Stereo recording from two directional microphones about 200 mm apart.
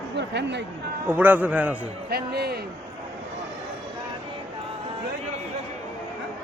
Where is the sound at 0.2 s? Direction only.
60° right (ahead or behind).